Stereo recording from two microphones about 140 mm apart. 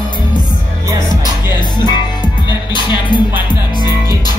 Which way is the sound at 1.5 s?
30° left (ahead or behind).